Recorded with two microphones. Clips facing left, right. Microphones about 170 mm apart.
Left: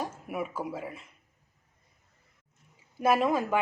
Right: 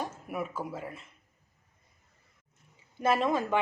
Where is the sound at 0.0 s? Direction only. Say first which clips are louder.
Left 1 dB; 5° left (ahead or behind).